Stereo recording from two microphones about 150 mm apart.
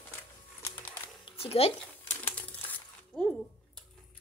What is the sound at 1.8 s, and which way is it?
Crumpling, 10° left (ahead or behind).